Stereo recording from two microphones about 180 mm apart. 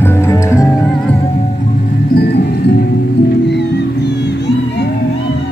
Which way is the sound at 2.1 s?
65° left (ahead or behind).